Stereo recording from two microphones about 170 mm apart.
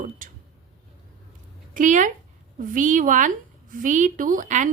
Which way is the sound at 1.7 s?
50° right (ahead or behind).